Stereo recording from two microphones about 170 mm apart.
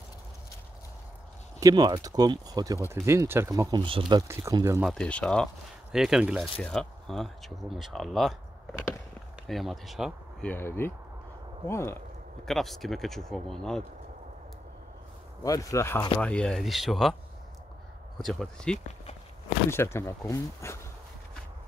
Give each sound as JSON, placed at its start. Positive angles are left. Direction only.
{"t": 1.6, "sound": "speech", "side_deg": -20}
{"t": 3.8, "sound": "speech", "side_deg": -30}
{"t": 4.3, "sound": "speech", "side_deg": -20}
{"t": 4.8, "sound": "speech", "side_deg": 5}
{"t": 9.5, "sound": "speech", "side_deg": 0}
{"t": 10.4, "sound": "speech", "side_deg": 10}
{"t": 12.4, "sound": "speech", "side_deg": 0}
{"t": 15.4, "sound": "speech", "side_deg": 20}
{"t": 18.2, "sound": "speech", "side_deg": 0}
{"t": 19.7, "sound": "speech", "side_deg": 15}